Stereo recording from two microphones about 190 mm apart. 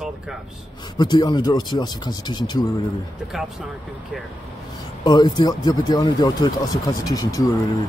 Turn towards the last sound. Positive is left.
turn(degrees=20)  # may be behind; listen again after turning